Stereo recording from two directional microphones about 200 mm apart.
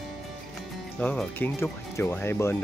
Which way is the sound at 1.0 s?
10° left (ahead or behind).